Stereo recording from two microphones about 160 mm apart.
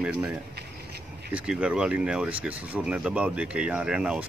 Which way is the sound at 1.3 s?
5° right (ahead or behind).